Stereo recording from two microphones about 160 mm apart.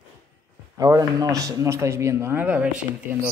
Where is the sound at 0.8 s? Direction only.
20° right (ahead or behind).